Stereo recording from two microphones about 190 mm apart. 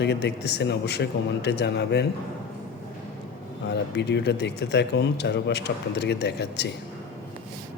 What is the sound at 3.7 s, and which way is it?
Speech, 65° left (ahead or behind).